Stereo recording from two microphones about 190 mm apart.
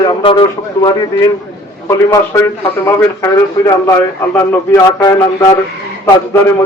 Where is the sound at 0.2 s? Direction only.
25° left (ahead or behind).